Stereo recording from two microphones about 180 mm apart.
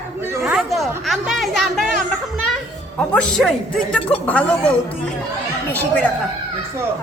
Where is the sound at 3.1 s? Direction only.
5° left (ahead or behind).